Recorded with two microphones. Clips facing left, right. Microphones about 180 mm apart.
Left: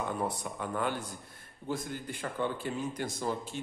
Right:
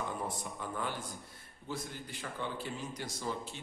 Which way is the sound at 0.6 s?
65° left (ahead or behind).